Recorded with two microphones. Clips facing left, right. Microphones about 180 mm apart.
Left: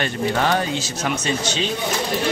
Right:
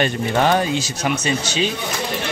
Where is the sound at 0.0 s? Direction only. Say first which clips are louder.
Right 3 dB; 20° right (ahead or behind).